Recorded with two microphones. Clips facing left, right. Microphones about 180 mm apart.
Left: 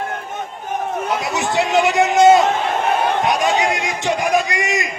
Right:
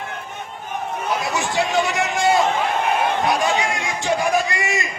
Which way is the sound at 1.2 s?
20° left (ahead or behind).